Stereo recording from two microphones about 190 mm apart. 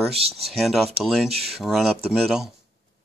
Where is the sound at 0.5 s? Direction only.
Centre (ahead or behind).